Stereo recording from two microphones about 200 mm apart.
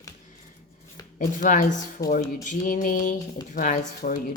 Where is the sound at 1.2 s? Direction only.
45° left (ahead or behind).